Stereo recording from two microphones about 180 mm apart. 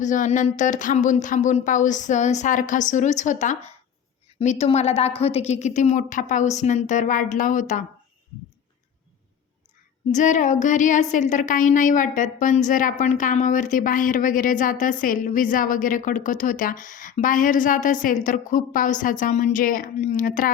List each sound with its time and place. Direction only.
0.0 s a woman's voice: 45° left (ahead or behind)
10.1 s a woman's voice: 45° left (ahead or behind)